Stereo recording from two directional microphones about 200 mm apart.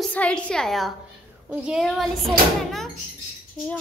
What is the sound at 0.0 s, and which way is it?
A woman's voice, 5° left (ahead or behind).